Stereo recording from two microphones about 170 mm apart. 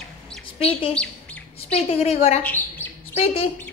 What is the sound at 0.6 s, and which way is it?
Speech, 30° left (ahead or behind).